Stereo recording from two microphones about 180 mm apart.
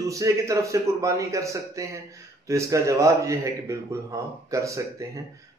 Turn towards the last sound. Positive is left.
turn(degrees=-15)  # may be behind; listen again after turning